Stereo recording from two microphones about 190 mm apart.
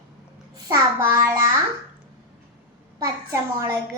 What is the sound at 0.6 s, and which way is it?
Speech, 15° right (ahead or behind).